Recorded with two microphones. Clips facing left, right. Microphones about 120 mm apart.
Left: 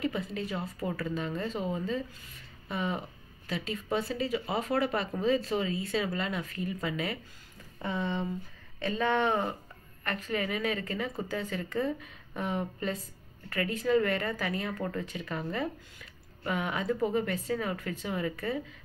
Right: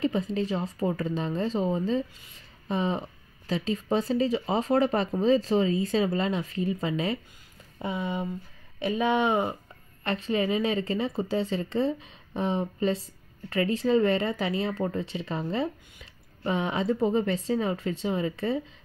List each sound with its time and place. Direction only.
0.0 s a woman's voice: 30° right (ahead or behind)
7.8 s a woman's voice: 15° right (ahead or behind)